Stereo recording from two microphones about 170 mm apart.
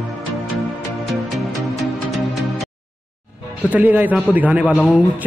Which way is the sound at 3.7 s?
10° right (ahead or behind).